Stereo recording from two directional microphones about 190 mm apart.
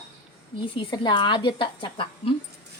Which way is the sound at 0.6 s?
25° left (ahead or behind).